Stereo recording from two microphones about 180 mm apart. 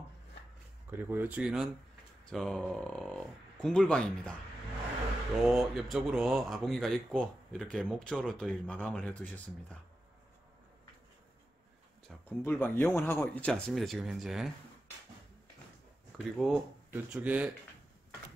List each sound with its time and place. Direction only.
0.8 s speech: 10° right (ahead or behind); by 4.4 s 5° left (ahead or behind)
5.5 s speech: centre (ahead or behind)
12.3 s speech: 10° left (ahead or behind)
16.3 s speech: centre (ahead or behind)